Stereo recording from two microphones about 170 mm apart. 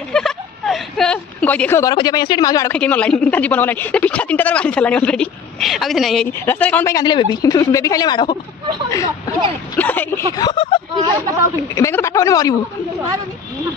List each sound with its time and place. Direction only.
0.1 s a sound: 5° left (ahead or behind)
2.0 s speech: 25° left (ahead or behind)
2.7 s speech: 10° left (ahead or behind)
6.4 s speech: 10° left (ahead or behind)
9.8 s speech: 10° left (ahead or behind)
10.3 s speech: 25° left (ahead or behind)
11.2 s a woman's voice: 20° right (ahead or behind)
11.7 s speech: 15° left (ahead or behind)